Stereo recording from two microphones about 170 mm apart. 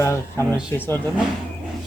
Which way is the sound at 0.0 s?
15° left (ahead or behind).